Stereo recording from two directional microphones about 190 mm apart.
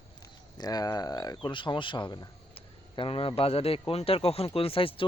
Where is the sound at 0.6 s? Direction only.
20° left (ahead or behind).